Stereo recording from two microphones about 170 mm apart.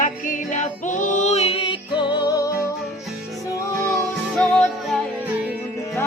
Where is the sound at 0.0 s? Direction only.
50° left (ahead or behind).